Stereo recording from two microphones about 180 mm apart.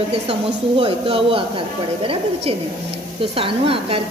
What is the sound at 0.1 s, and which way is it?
A woman's voice, 30° right (ahead or behind).